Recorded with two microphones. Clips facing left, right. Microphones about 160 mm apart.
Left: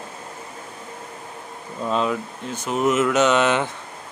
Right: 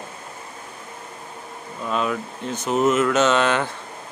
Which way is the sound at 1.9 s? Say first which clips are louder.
Left 2 dB; 25° left (ahead or behind).